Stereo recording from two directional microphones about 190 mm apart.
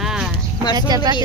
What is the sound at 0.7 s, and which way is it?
Speech, 20° right (ahead or behind).